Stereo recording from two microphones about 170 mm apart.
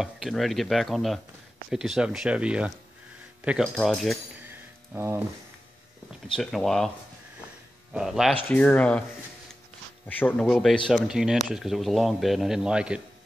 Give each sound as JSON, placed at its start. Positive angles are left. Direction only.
{"t": 0.0, "sound": "a man's voice", "side_deg": 0}
{"t": 4.9, "sound": "speech", "side_deg": -15}
{"t": 6.3, "sound": "a man's voice", "side_deg": 0}
{"t": 7.9, "sound": "a man's voice", "side_deg": 0}
{"t": 8.5, "sound": "speech", "side_deg": 10}
{"t": 10.0, "sound": "a man's voice", "side_deg": 10}